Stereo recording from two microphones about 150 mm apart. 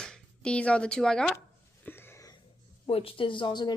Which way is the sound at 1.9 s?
15° left (ahead or behind).